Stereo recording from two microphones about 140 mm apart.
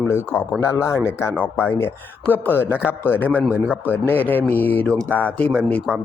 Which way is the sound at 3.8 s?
15° left (ahead or behind).